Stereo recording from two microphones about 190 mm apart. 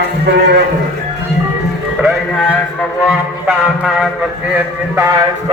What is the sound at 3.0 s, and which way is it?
Music, 5° right (ahead or behind).